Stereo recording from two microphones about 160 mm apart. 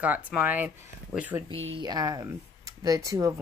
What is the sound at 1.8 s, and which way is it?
Speech, 25° right (ahead or behind).